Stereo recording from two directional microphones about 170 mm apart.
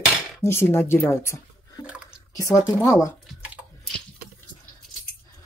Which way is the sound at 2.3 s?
20° left (ahead or behind).